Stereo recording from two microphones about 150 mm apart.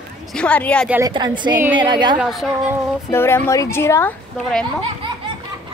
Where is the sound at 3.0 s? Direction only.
15° left (ahead or behind).